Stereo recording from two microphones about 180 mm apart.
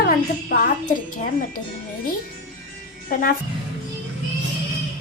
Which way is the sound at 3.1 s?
55° left (ahead or behind).